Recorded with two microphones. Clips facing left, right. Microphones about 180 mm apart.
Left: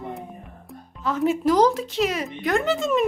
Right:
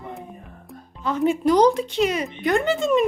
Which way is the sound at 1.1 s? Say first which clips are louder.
Right 1 dB; centre (ahead or behind).